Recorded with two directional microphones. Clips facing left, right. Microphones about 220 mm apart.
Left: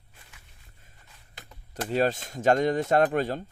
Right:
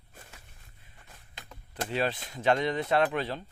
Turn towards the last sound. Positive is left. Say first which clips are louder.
# left 4 dB
turn(degrees=45)  # may be behind; listen again after turning